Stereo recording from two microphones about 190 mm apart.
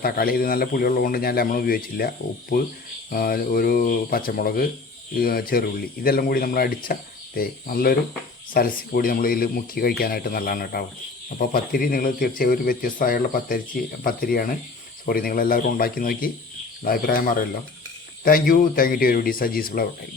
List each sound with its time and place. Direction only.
0.0 s speech: 50° left (ahead or behind)
3.1 s speech: 50° left (ahead or behind)